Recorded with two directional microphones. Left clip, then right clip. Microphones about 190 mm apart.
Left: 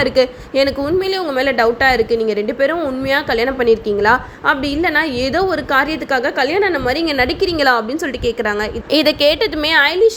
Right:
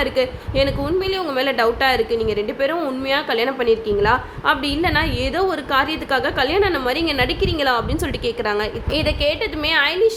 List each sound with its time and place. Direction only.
0.0 s a woman's voice: 25° left (ahead or behind)
8.9 s a woman's voice: 35° left (ahead or behind)